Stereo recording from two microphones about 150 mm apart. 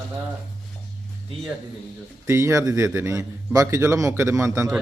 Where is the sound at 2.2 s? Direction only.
20° right (ahead or behind).